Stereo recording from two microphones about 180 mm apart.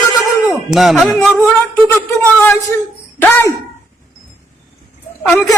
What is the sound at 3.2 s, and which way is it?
Speech, 10° left (ahead or behind).